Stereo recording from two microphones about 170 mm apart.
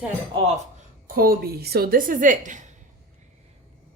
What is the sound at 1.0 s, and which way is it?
A woman's voice, 55° right (ahead or behind).